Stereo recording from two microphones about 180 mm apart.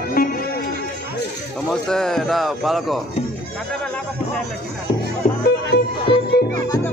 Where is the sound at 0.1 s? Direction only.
55° left (ahead or behind).